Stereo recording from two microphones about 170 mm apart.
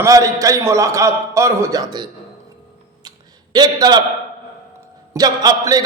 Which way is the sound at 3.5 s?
25° right (ahead or behind).